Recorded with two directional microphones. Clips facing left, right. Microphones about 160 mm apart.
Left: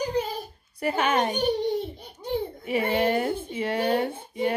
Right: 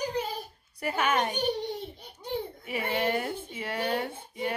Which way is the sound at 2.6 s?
25° left (ahead or behind).